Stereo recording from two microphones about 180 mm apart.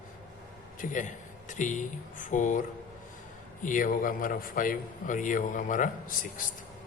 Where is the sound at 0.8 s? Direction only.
45° left (ahead or behind).